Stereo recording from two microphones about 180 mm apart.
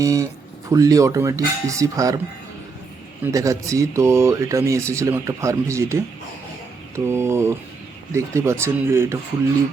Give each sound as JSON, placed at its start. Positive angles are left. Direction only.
{"t": 0.0, "sound": "speech", "side_deg": -20}
{"t": 3.3, "sound": "speech", "side_deg": -20}